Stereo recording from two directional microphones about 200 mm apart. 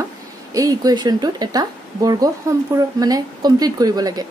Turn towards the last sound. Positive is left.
turn(degrees=-20)  # may be behind; listen again after turning